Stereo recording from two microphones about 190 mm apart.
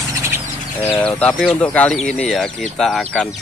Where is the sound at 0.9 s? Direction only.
5° left (ahead or behind).